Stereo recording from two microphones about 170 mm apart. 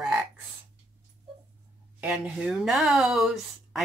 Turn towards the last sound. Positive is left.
turn(degrees=0)  # may be behind; listen again after turning